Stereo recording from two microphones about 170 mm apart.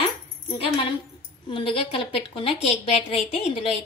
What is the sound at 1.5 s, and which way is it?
A woman's voice, 30° left (ahead or behind).